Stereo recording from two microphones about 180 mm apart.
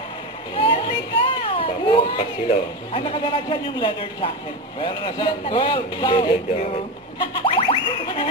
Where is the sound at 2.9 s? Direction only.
30° left (ahead or behind).